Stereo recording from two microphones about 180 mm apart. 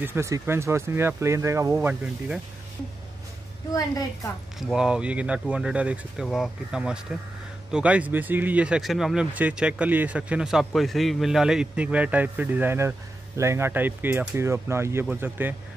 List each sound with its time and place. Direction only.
0.0 s speech: 15° right (ahead or behind)
4.6 s speech: centre (ahead or behind)